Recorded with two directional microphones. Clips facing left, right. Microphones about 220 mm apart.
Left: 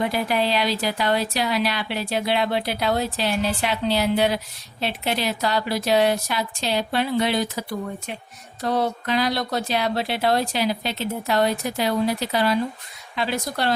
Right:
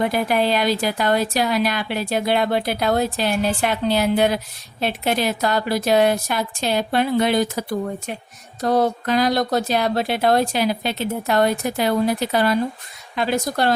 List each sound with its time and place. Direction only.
0.0 s speech: 50° right (ahead or behind)